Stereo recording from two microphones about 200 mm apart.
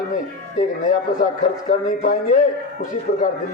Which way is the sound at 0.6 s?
40° left (ahead or behind).